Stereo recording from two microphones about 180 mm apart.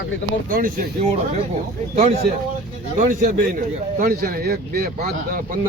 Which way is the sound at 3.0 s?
45° right (ahead or behind).